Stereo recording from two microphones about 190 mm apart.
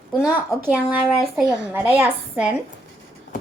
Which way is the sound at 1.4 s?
5° right (ahead or behind).